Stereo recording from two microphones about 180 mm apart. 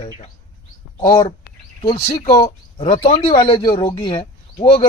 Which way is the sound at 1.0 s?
30° left (ahead or behind).